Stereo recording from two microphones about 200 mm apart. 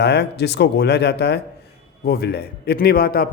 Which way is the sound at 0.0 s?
55° left (ahead or behind).